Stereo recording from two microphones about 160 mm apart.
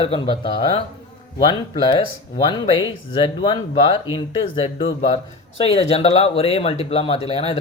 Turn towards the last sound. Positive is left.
turn(degrees=35)  # may be behind; listen again after turning